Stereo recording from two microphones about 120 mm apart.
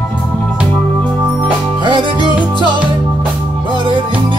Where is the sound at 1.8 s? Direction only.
40° right (ahead or behind).